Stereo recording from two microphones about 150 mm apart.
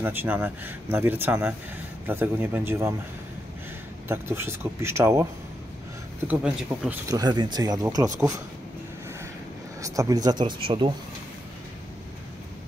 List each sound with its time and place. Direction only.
0.0 s speech: 15° right (ahead or behind)
4.1 s speech: 15° right (ahead or behind)
7.1 s speech: 25° right (ahead or behind)
9.8 s speech: 20° right (ahead or behind)